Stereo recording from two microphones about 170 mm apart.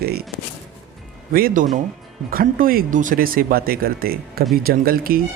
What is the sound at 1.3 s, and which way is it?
Speech, 60° right (ahead or behind).